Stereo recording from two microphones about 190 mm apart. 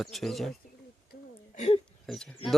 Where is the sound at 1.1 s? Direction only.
40° left (ahead or behind).